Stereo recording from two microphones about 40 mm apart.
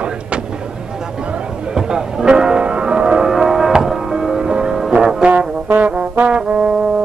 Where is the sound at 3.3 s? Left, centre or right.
Centre.